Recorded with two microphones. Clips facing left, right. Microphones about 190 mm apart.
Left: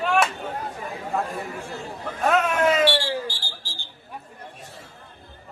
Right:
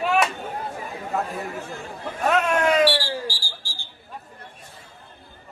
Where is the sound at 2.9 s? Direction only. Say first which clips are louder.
Left 1 dB; 25° left (ahead or behind).